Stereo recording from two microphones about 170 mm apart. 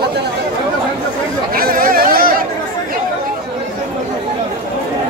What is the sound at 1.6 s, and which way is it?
Chatter, 60° right (ahead or behind).